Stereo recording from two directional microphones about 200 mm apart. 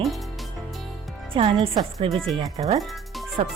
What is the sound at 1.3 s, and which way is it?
Speech, 25° right (ahead or behind).